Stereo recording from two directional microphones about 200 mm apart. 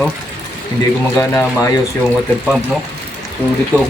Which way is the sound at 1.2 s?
15° left (ahead or behind).